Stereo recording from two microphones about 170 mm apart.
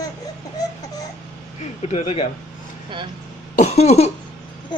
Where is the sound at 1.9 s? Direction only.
40° left (ahead or behind).